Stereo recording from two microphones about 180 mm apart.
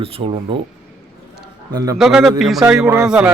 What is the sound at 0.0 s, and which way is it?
Speech, 30° right (ahead or behind).